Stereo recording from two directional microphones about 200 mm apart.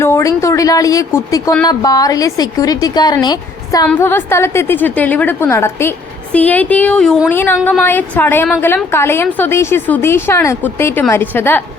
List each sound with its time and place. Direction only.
0.0 s a woman's voice: 15° left (ahead or behind)